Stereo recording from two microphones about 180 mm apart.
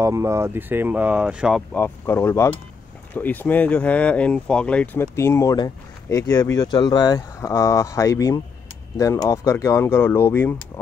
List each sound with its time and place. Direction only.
0.0 s speech: 15° right (ahead or behind)
1.7 s speech: 10° left (ahead or behind)